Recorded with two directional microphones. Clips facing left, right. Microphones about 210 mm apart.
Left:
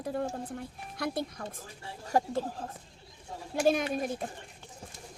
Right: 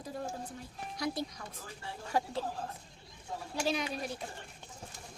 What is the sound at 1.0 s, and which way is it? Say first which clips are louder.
Speech: left 3 dB; 55° left (ahead or behind).